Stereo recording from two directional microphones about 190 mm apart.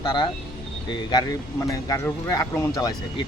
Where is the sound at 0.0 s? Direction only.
25° left (ahead or behind).